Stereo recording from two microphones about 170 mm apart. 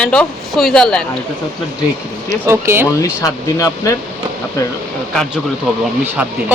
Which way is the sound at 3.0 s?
20° left (ahead or behind).